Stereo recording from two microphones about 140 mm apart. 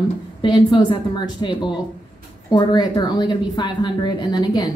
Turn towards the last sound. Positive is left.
turn(degrees=30)  # may be behind; listen again after turning